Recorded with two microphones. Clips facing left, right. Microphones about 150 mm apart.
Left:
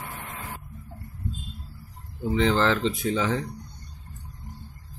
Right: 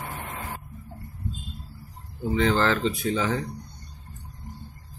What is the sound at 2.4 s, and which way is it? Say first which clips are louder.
Speech: even; 20° left (ahead or behind).